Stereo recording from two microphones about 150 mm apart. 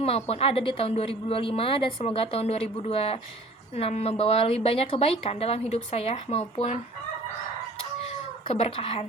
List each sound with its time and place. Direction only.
0.3 s a woman's voice: 40° left (ahead or behind)
8.0 s chicken: 40° left (ahead or behind)